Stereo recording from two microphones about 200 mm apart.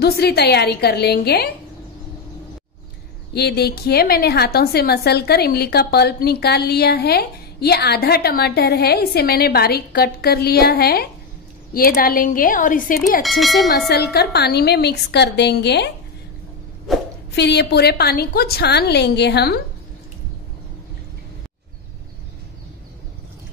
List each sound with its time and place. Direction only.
0.0 s a woman's voice: 50° left (ahead or behind)
3.3 s a woman's voice: 55° left (ahead or behind)
13.2 s speech: centre (ahead or behind)
13.7 s a woman's voice: 55° left (ahead or behind)
16.9 s speech: centre (ahead or behind)
17.3 s a woman's voice: 55° left (ahead or behind)